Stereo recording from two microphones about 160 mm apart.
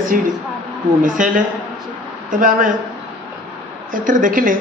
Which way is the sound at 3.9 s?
55° right (ahead or behind).